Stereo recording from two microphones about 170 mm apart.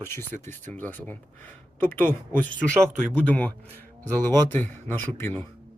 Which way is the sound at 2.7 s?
15° right (ahead or behind).